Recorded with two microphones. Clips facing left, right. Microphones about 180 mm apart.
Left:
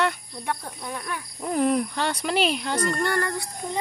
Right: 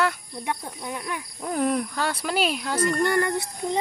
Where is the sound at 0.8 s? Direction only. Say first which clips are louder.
Right 1 dB; 15° right (ahead or behind).